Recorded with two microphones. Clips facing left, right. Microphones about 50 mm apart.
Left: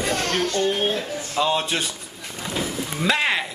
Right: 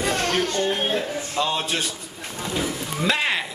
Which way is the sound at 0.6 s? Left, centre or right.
Centre.